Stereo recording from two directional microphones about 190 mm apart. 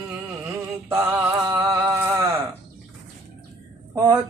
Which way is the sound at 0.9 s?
15° right (ahead or behind).